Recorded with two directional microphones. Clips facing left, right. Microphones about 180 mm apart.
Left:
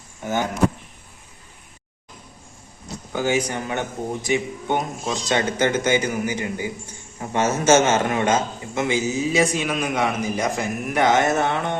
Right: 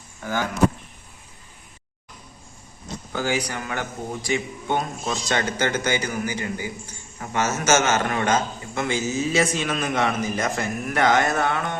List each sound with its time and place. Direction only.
0.2 s a man's voice: 20° left (ahead or behind)
3.1 s a man's voice: 20° left (ahead or behind)